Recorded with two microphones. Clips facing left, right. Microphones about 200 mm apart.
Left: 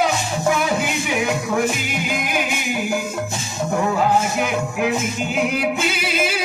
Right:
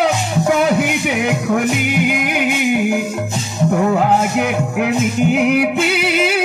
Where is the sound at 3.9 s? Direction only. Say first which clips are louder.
Right 4 dB; 60° right (ahead or behind).